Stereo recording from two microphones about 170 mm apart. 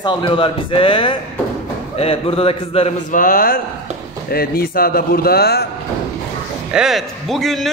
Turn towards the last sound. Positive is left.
turn(degrees=0)  # may be behind; listen again after turning